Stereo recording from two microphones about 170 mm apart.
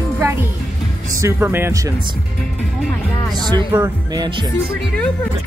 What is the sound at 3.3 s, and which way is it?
Speech, 25° right (ahead or behind).